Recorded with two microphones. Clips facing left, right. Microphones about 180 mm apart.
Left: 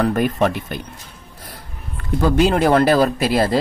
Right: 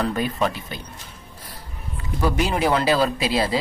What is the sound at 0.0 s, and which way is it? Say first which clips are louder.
A man's voice: left 5 dB; 50° left (ahead or behind).